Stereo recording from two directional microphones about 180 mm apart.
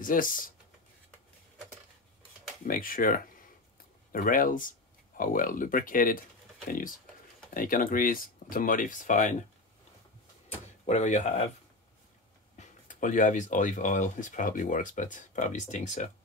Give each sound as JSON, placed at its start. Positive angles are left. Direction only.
{"t": 0.0, "sound": "speech", "side_deg": 50}
{"t": 2.6, "sound": "speech", "side_deg": 50}
{"t": 7.5, "sound": "speech", "side_deg": 50}
{"t": 10.9, "sound": "speech", "side_deg": 40}
{"t": 12.5, "sound": "speech", "side_deg": 45}